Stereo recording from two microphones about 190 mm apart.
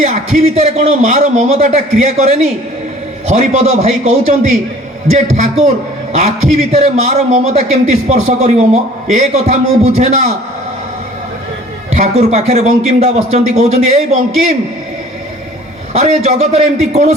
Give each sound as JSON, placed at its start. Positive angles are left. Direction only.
{"t": 0.0, "sound": "a man's voice", "side_deg": -35}
{"t": 11.9, "sound": "a man's voice", "side_deg": -35}
{"t": 15.9, "sound": "a man's voice", "side_deg": -35}